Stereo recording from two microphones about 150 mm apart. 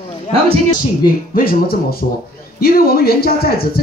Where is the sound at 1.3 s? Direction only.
80° left.